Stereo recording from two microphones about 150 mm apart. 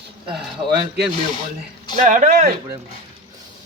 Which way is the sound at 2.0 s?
55° right (ahead or behind).